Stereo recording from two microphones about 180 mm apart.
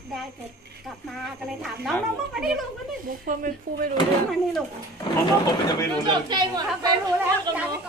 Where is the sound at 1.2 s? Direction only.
Centre (ahead or behind).